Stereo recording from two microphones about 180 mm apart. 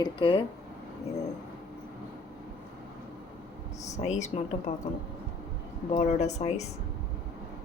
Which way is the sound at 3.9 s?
40° left (ahead or behind).